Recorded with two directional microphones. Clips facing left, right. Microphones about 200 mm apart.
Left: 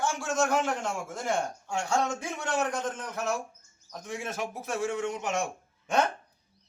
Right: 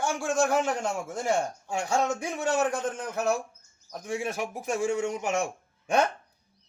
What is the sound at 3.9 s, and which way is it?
Speech, 15° right (ahead or behind).